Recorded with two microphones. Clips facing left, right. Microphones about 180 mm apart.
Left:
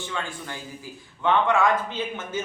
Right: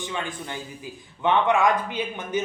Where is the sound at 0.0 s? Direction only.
20° right (ahead or behind).